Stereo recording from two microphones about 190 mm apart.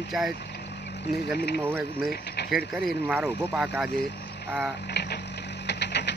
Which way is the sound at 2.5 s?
Centre (ahead or behind).